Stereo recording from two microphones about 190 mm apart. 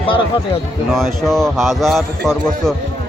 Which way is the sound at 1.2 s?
Centre (ahead or behind).